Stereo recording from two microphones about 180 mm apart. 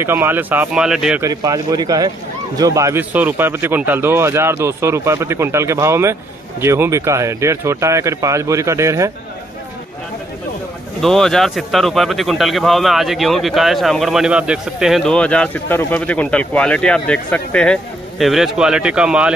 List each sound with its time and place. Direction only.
0.0 s a man's voice: 10° right (ahead or behind)
1.2 s a man's voice: 20° right (ahead or behind)
11.0 s a man's voice: centre (ahead or behind)